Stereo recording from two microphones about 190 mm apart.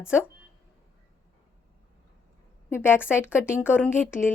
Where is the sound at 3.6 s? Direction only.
10° left (ahead or behind).